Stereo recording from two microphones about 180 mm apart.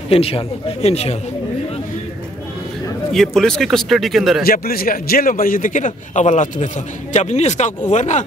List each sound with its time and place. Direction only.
0.1 s a man's voice: 30° left (ahead or behind)
3.1 s speech: centre (ahead or behind)
4.4 s a man's voice: 55° left (ahead or behind)